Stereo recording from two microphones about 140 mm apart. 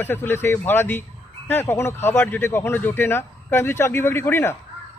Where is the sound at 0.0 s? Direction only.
15° left (ahead or behind).